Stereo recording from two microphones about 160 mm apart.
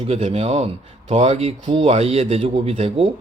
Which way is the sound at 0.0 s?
40° right (ahead or behind).